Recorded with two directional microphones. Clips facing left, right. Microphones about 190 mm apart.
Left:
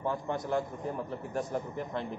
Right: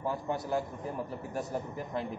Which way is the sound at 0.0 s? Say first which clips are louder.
Left 1 dB; 10° right (ahead or behind).